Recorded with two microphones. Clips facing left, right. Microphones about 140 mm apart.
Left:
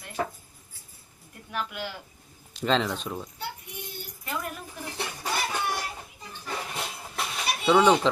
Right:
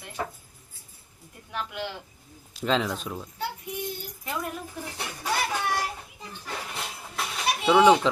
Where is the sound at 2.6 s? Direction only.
5° right (ahead or behind).